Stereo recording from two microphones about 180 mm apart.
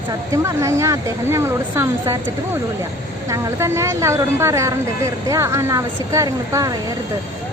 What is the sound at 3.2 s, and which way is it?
Speech, 20° right (ahead or behind).